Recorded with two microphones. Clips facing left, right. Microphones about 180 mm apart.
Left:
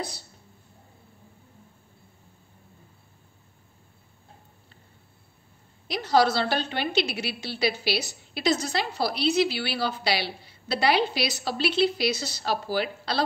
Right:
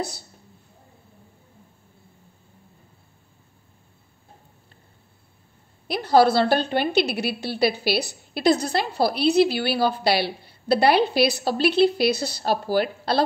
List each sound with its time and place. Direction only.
6.0 s a woman's voice: 55° right (ahead or behind)